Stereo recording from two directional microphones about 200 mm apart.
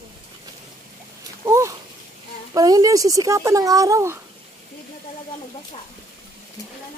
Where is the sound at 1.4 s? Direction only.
15° right (ahead or behind).